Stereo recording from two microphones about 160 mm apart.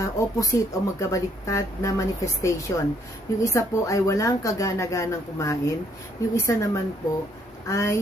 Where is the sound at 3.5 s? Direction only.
20° left (ahead or behind).